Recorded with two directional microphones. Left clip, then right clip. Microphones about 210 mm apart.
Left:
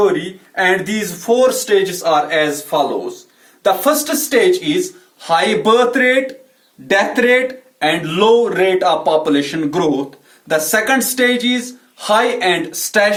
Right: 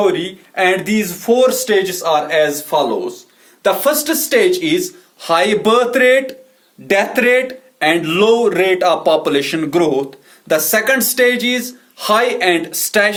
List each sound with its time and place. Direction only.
0.5 s speech: 45° right (ahead or behind)